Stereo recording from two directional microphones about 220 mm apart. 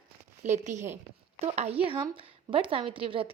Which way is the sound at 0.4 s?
35° right (ahead or behind).